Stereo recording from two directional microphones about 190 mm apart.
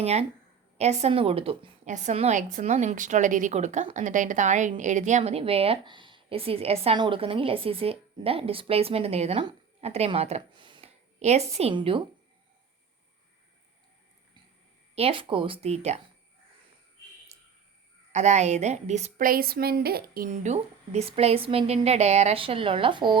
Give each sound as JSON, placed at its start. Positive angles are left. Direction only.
{"t": 0.0, "sound": "speech", "side_deg": -35}
{"t": 14.9, "sound": "speech", "side_deg": -30}
{"t": 18.1, "sound": "speech", "side_deg": -35}